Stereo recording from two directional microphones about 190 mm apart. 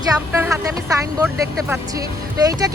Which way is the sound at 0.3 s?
15° right (ahead or behind).